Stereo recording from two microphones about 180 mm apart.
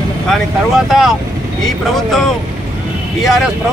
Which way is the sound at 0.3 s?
Centre (ahead or behind).